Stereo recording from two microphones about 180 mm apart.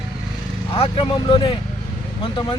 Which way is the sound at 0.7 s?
30° left (ahead or behind).